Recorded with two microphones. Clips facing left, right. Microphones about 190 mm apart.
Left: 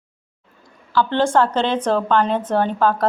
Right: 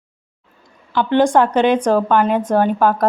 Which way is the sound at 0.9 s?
15° right (ahead or behind).